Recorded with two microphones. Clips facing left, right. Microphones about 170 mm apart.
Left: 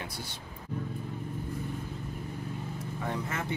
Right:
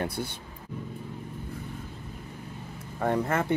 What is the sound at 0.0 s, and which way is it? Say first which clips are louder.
Speech: right 9 dB; 55° right (ahead or behind).